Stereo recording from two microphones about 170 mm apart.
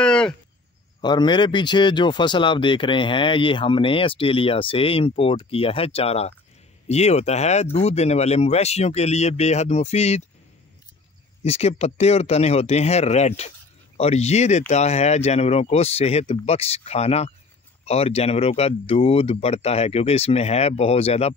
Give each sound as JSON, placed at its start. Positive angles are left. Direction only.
{"t": 0.0, "sound": "a sound", "side_deg": 5}
{"t": 1.0, "sound": "speech", "side_deg": 25}
{"t": 11.4, "sound": "speech", "side_deg": 35}